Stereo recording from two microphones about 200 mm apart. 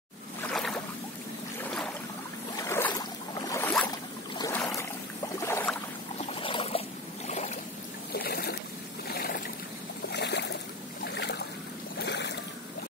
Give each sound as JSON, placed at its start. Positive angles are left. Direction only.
{"t": 0.4, "sound": "boat", "side_deg": 0}
{"t": 6.3, "sound": "boat", "side_deg": 25}
{"t": 8.1, "sound": "a sound", "side_deg": 50}
{"t": 10.0, "sound": "boat", "side_deg": 60}